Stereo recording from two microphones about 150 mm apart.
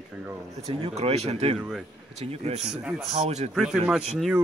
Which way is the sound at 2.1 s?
45° right (ahead or behind).